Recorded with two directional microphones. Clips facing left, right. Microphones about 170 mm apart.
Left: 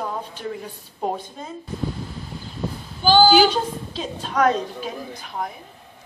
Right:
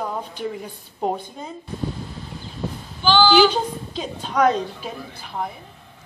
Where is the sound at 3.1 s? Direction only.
40° left (ahead or behind).